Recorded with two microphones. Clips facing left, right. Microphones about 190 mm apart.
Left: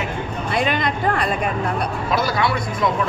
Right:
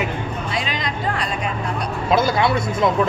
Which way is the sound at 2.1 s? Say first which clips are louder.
Right 4 dB; 25° right (ahead or behind).